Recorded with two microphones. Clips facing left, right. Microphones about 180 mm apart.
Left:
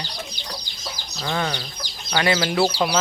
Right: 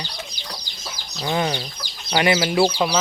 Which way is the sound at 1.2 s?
20° right (ahead or behind).